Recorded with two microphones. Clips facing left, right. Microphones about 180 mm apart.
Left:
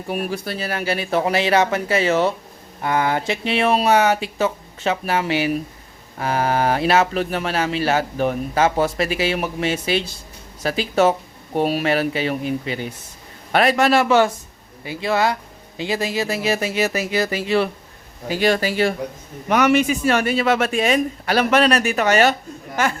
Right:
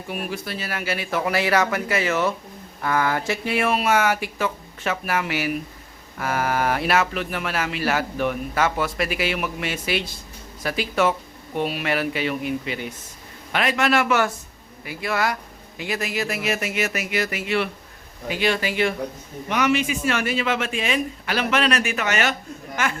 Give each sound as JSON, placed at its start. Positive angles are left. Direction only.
{"t": 0.1, "sound": "speech", "side_deg": 40}
{"t": 19.5, "sound": "speech", "side_deg": 50}